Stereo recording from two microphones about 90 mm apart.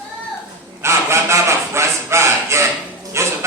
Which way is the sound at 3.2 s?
30° right (ahead or behind).